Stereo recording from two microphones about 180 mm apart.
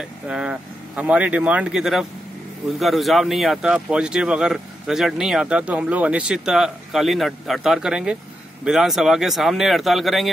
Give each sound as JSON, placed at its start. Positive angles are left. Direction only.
{"t": 0.0, "sound": "speech", "side_deg": -5}